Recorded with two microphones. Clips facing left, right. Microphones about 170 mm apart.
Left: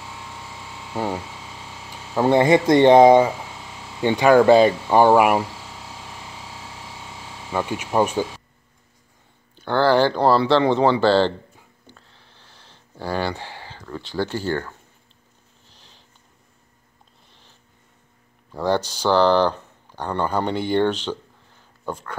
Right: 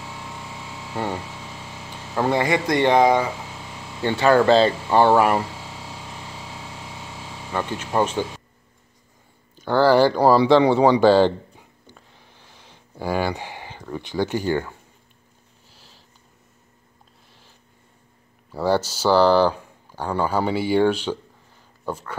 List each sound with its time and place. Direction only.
0.9 s speech: 10° left (ahead or behind)
2.2 s speech: 25° left (ahead or behind)
7.5 s speech: 10° left (ahead or behind)
9.6 s speech: 5° right (ahead or behind)
15.7 s sniff: 5° right (ahead or behind)
18.5 s speech: 10° right (ahead or behind)